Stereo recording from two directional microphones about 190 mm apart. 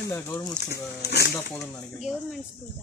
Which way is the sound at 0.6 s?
60° left (ahead or behind).